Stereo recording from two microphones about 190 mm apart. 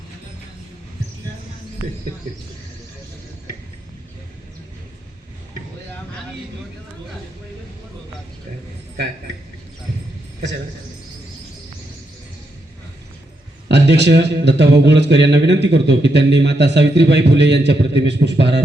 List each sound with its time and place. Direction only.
13.7 s speech: 65° right (ahead or behind)